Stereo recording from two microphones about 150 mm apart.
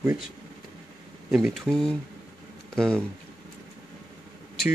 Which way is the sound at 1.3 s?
5° right (ahead or behind).